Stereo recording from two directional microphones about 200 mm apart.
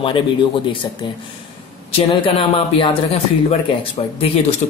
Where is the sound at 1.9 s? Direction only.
30° left (ahead or behind).